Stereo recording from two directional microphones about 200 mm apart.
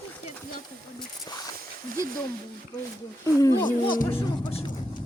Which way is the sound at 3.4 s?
15° left (ahead or behind).